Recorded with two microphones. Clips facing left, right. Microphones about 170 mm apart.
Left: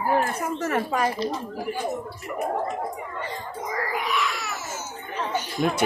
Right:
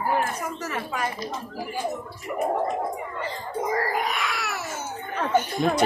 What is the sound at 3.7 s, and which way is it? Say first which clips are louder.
Cat: even; 40° right (ahead or behind).